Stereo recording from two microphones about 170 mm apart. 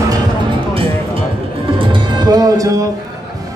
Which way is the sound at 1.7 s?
30° right (ahead or behind).